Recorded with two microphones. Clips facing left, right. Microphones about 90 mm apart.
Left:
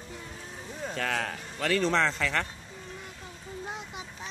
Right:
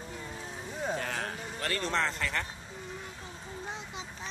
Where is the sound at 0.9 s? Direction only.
90° left.